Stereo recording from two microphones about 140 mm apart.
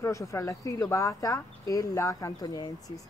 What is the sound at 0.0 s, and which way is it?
Speech, 20° left (ahead or behind).